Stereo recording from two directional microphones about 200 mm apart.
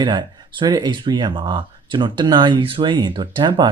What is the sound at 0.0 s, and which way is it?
Speech, 20° right (ahead or behind).